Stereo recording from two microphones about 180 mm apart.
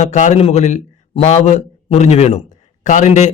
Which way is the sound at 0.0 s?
40° left (ahead or behind).